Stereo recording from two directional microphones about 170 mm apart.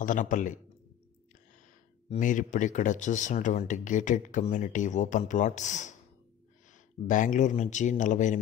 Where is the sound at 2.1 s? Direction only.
50° left (ahead or behind).